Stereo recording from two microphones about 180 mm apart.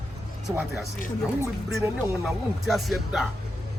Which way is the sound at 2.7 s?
Centre (ahead or behind).